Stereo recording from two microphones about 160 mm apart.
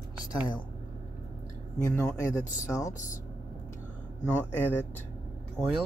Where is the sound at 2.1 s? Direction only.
20° left (ahead or behind).